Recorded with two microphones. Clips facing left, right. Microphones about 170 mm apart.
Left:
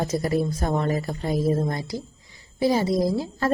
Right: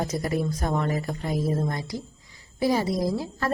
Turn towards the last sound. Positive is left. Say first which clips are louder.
# left 3 dB
turn(degrees=25)  # may be behind; listen again after turning